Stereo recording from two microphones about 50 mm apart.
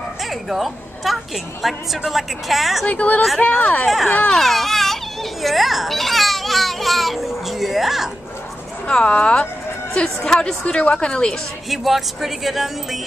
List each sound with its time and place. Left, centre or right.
0.2 s a child's voice: centre
2.9 s speech: left
3.8 s a child's voice: centre
8.8 s a woman's voice: centre
11.7 s a child's voice: centre